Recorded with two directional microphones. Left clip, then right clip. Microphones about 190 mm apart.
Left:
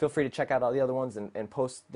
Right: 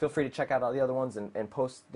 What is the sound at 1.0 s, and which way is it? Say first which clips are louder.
Speech: right 1 dB; 10° left (ahead or behind).